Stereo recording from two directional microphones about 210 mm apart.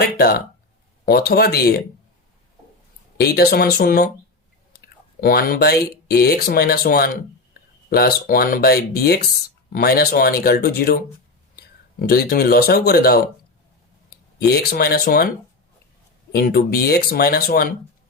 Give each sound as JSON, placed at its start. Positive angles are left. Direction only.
{"t": 0.0, "sound": "speech", "side_deg": 50}
{"t": 3.2, "sound": "speech", "side_deg": 50}
{"t": 5.2, "sound": "speech", "side_deg": 45}
{"t": 14.3, "sound": "speech", "side_deg": 50}
{"t": 16.3, "sound": "speech", "side_deg": 45}